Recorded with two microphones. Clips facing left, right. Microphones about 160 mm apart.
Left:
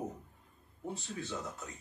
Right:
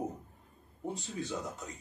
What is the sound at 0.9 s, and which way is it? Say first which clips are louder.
Speech: right 3 dB; 20° right (ahead or behind).